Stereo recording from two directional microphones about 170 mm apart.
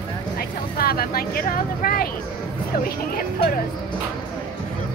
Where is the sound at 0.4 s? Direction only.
60° left (ahead or behind).